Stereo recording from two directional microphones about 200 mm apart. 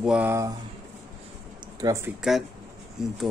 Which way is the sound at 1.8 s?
15° right (ahead or behind).